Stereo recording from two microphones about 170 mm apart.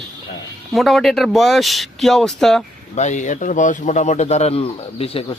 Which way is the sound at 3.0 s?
45° left (ahead or behind).